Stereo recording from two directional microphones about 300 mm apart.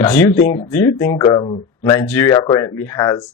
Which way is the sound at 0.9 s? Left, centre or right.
Centre.